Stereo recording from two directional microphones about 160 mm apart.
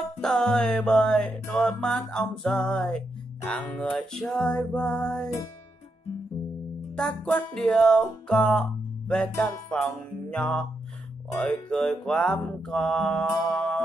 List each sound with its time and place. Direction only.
0.2 s music: 5° left (ahead or behind)
7.0 s music: 5° left (ahead or behind)
9.3 s music: 20° left (ahead or behind)
9.7 s music: 5° left (ahead or behind)